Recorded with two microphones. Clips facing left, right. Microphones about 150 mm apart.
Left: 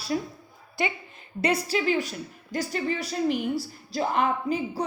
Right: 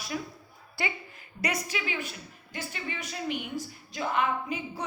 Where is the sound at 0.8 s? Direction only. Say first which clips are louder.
Left 5 dB; 20° left (ahead or behind).